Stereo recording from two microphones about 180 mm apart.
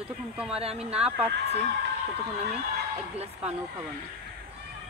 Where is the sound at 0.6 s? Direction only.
35° right (ahead or behind).